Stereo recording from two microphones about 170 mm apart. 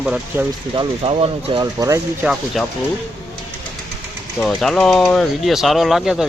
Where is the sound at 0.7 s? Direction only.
30° right (ahead or behind).